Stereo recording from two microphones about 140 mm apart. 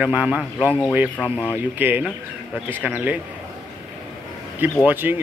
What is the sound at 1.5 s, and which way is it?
Speech, 15° right (ahead or behind).